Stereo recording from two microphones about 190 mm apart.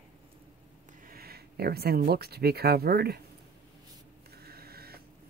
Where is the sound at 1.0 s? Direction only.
55° right (ahead or behind).